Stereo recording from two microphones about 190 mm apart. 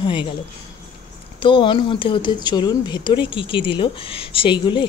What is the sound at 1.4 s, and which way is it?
Speech, 25° left (ahead or behind).